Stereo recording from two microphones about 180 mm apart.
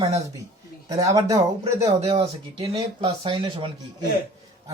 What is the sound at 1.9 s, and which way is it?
Speech, 35° right (ahead or behind).